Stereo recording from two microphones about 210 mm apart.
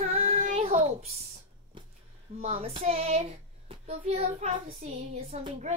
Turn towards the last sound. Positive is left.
turn(degrees=-30)  # may be behind; listen again after turning